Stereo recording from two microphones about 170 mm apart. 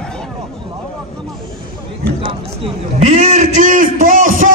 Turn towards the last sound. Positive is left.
turn(degrees=-50)  # may be behind; listen again after turning